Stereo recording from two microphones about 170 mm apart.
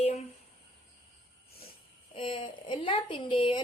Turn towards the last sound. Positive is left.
turn(degrees=30)  # may be behind; listen again after turning